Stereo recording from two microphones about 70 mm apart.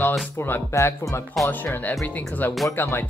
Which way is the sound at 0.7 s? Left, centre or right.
Left.